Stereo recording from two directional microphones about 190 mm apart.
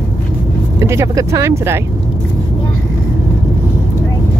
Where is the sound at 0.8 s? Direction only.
15° right (ahead or behind).